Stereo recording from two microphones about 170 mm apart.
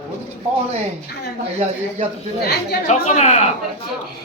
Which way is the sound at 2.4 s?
75° left (ahead or behind).